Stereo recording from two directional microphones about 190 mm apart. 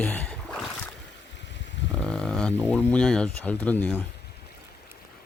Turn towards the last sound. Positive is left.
turn(degrees=10)  # may be behind; listen again after turning